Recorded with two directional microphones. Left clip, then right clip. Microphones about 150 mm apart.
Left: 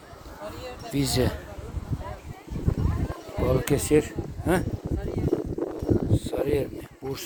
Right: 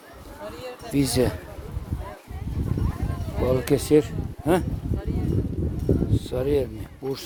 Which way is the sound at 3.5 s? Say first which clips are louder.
Right 3 dB; 30° right (ahead or behind).